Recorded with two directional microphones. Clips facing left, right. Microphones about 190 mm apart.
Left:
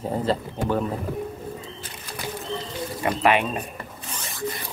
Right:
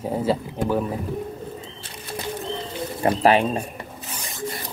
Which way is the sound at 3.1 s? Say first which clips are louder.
Right 4 dB; 30° right (ahead or behind).